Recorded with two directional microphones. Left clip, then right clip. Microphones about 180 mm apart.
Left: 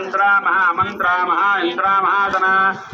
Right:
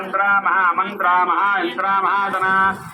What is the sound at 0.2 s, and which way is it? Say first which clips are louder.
A man's voice: left 2 dB; 50° right (ahead or behind).